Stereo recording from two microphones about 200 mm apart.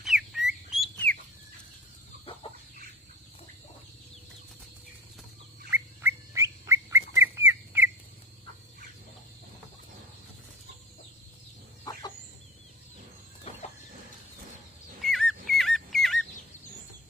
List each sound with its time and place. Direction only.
0.0 s bird: centre (ahead or behind)
5.7 s bird: 10° right (ahead or behind)
11.9 s chicken: 15° left (ahead or behind)
15.0 s whistle: centre (ahead or behind)